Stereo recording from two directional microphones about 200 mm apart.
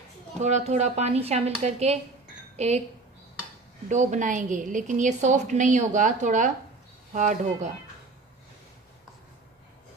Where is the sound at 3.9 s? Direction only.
35° right (ahead or behind).